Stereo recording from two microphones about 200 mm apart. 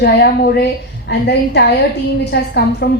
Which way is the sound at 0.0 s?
55° left (ahead or behind).